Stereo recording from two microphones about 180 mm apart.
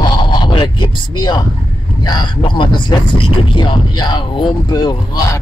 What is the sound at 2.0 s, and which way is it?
Speech, 25° left (ahead or behind).